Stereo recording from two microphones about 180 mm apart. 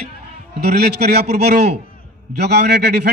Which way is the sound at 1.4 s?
65° right (ahead or behind).